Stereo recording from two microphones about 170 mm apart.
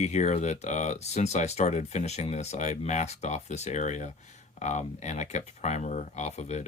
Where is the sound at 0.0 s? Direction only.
45° left (ahead or behind).